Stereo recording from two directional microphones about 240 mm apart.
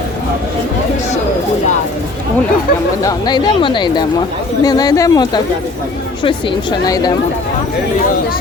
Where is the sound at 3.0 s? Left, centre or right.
Centre.